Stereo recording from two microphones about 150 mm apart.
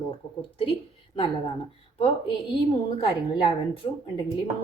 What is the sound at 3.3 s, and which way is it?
Speech, 30° left (ahead or behind).